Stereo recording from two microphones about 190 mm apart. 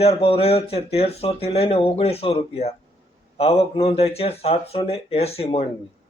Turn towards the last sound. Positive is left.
turn(degrees=30)  # may be behind; listen again after turning